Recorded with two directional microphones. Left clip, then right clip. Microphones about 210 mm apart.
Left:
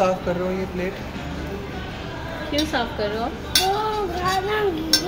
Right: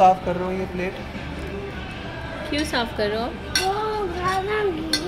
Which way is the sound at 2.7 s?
50° right (ahead or behind).